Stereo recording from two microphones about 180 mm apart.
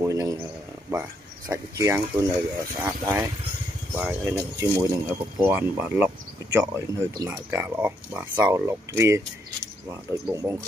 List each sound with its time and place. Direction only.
0.0 s speech: 20° right (ahead or behind)
1.5 s speech: 20° right (ahead or behind)